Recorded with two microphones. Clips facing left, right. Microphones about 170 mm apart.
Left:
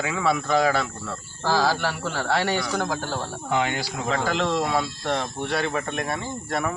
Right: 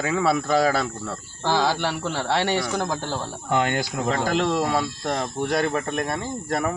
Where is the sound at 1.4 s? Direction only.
20° right (ahead or behind).